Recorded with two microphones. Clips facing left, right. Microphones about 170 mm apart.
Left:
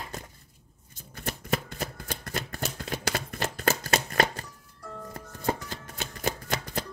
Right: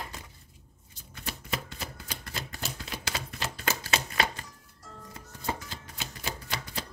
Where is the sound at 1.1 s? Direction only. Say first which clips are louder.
Left 6 dB; 50° left (ahead or behind).